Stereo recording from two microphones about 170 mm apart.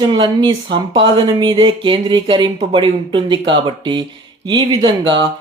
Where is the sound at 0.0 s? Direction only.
25° right (ahead or behind).